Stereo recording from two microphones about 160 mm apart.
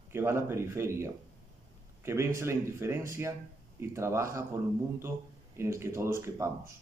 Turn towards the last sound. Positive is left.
turn(degrees=-15)  # may be behind; listen again after turning